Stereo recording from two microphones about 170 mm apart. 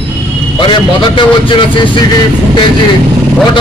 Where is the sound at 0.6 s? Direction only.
30° left (ahead or behind).